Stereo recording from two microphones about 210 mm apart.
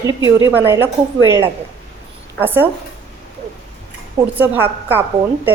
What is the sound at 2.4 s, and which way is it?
Speech, 10° right (ahead or behind).